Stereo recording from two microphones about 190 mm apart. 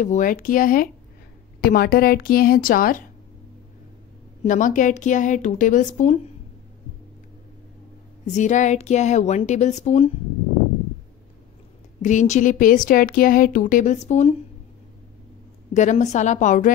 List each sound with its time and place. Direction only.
0.0 s speech: 40° left (ahead or behind)
4.5 s a woman's voice: 45° left (ahead or behind)
8.3 s a woman's voice: 40° left (ahead or behind)
12.0 s speech: 40° left (ahead or behind)
15.7 s a woman's voice: 40° left (ahead or behind)